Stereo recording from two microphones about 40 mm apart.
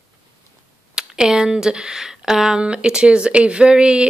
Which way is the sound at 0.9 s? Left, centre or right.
Centre.